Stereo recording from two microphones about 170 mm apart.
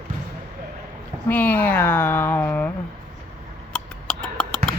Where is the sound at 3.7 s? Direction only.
5° left (ahead or behind).